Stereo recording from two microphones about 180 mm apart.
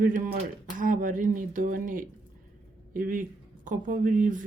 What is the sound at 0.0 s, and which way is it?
Speech, 50° right (ahead or behind).